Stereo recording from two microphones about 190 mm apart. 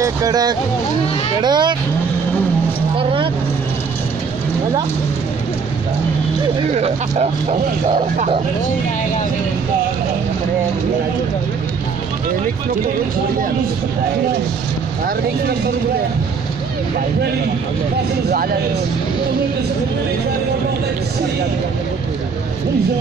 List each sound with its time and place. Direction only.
0.0 s speech: 20° right (ahead or behind)
3.0 s vehicle: 25° right (ahead or behind)
6.8 s speech: 30° right (ahead or behind)